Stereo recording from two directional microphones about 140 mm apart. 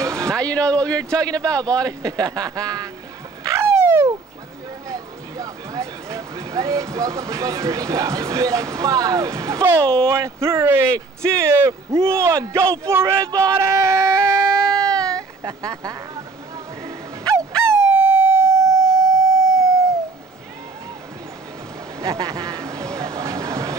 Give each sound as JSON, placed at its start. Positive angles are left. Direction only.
{"t": 0.0, "sound": "a sound", "side_deg": -20}
{"t": 0.3, "sound": "a man's voice", "side_deg": 5}
{"t": 1.9, "sound": "speech", "side_deg": -25}
{"t": 3.4, "sound": "dog", "side_deg": -20}
{"t": 4.8, "sound": "speech", "side_deg": -25}
{"t": 14.6, "sound": "music", "side_deg": 5}
{"t": 15.1, "sound": "speech", "side_deg": -25}
{"t": 16.8, "sound": "music", "side_deg": -20}
{"t": 17.7, "sound": "siren", "side_deg": -15}
{"t": 22.0, "sound": "speech", "side_deg": -25}
{"t": 22.9, "sound": "a sound", "side_deg": -20}